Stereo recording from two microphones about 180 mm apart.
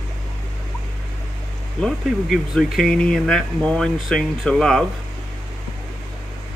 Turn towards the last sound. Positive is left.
turn(degrees=5)  # may be behind; listen again after turning